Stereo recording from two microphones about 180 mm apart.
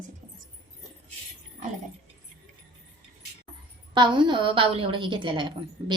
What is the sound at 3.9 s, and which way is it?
A woman's voice, 25° right (ahead or behind).